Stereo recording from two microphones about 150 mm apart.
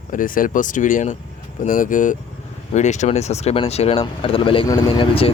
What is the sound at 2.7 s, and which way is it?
Speech, 50° left (ahead or behind).